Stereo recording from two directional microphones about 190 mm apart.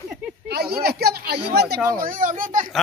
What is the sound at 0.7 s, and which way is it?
Speech, 55° right (ahead or behind).